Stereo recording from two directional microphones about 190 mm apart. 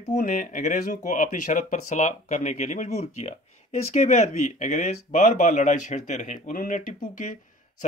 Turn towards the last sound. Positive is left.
turn(degrees=45)  # may be behind; listen again after turning